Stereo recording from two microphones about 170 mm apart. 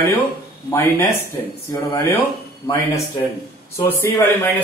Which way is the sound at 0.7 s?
10° left (ahead or behind).